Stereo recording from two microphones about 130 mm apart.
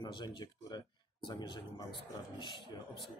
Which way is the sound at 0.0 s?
35° left (ahead or behind).